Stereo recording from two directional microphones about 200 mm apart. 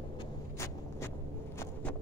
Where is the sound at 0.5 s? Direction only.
15° left (ahead or behind).